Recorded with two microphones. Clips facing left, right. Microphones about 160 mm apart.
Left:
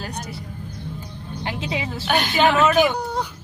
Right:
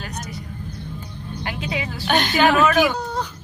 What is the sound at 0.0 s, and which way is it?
Vehicle, 30° left (ahead or behind).